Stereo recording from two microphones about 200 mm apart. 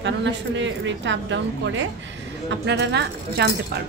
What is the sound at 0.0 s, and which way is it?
A woman's voice, 65° right (ahead or behind).